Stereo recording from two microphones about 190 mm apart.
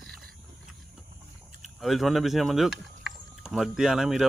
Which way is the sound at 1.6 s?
Centre (ahead or behind).